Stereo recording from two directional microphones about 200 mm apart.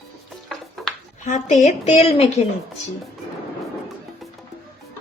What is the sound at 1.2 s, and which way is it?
A woman's voice, 35° left (ahead or behind).